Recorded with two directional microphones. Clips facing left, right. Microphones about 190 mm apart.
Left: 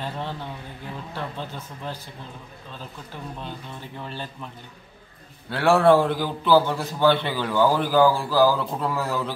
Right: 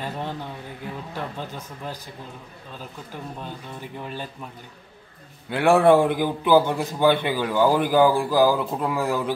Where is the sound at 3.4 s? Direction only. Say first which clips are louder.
Right 1 dB; 10° right (ahead or behind).